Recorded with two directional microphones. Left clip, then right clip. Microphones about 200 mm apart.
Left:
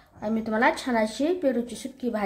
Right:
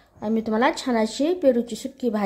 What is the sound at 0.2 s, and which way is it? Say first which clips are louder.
Speech: right 2 dB; 20° right (ahead or behind).